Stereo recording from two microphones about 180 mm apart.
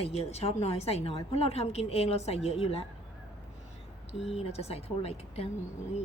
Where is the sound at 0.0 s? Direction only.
35° left (ahead or behind).